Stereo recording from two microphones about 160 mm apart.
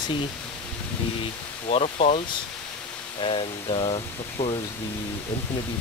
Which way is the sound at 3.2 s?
35° left (ahead or behind).